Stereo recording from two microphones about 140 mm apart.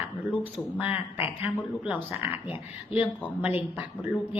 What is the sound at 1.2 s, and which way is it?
A woman's voice, 10° right (ahead or behind).